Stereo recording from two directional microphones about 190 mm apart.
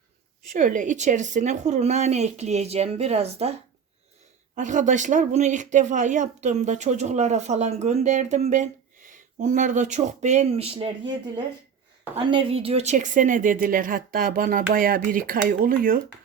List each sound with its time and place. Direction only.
0.5 s speech: 40° right (ahead or behind)